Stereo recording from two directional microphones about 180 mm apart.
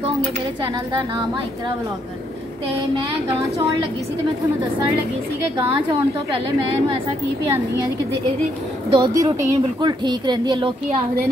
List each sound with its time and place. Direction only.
8.9 s speech: 20° right (ahead or behind)